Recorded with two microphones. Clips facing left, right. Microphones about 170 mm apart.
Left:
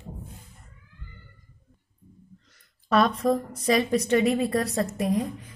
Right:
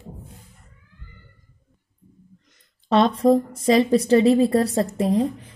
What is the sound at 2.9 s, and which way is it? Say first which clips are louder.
A woman's voice: right 5 dB; 25° right (ahead or behind).